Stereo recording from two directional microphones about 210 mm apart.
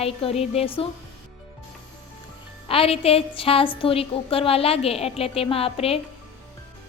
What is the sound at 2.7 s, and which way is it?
A woman's voice, 25° left (ahead or behind).